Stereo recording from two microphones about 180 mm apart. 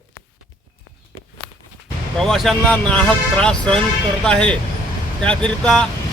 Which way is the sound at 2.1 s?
Centre (ahead or behind).